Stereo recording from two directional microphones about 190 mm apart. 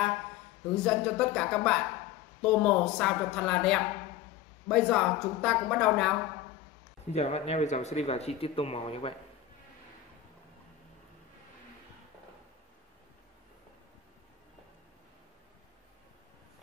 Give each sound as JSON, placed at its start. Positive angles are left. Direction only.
{"t": 0.8, "sound": "speech", "side_deg": 5}
{"t": 7.1, "sound": "speech", "side_deg": 35}